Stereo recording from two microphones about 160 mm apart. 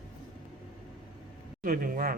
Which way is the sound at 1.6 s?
60° right (ahead or behind).